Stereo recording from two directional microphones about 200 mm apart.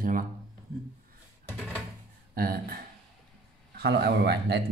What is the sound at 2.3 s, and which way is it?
Speech, 50° right (ahead or behind).